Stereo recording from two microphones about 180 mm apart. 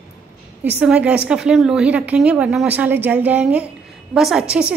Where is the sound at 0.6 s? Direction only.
10° right (ahead or behind).